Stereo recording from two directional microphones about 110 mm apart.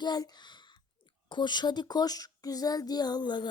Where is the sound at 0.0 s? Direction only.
40° left (ahead or behind).